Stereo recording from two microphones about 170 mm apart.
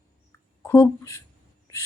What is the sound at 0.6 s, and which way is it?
Speech, 15° left (ahead or behind).